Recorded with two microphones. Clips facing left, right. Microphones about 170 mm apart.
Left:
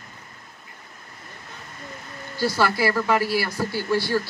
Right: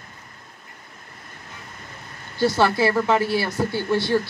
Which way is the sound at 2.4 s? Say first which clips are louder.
Right 3 dB; 20° right (ahead or behind).